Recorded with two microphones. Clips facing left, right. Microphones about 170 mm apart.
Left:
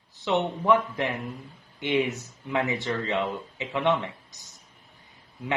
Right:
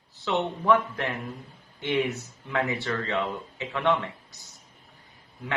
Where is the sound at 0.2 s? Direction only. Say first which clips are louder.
Left 2 dB; 15° left (ahead or behind).